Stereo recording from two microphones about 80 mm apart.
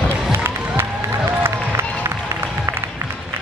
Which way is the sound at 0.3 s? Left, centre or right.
Right.